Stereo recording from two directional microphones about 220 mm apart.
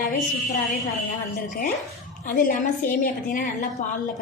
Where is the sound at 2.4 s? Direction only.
40° left (ahead or behind).